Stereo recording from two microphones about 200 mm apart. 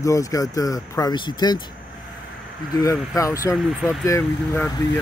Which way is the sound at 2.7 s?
15° left (ahead or behind).